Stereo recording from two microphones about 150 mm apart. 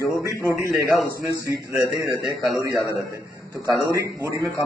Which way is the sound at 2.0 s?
Centre (ahead or behind).